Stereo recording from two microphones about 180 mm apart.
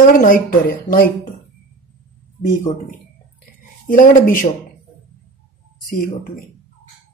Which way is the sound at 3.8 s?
45° left (ahead or behind).